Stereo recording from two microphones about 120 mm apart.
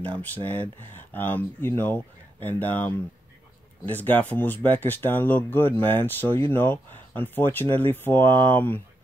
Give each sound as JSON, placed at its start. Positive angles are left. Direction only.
{"t": 0.0, "sound": "speech", "side_deg": 15}